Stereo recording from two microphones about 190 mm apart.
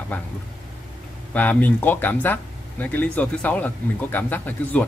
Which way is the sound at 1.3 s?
10° left (ahead or behind).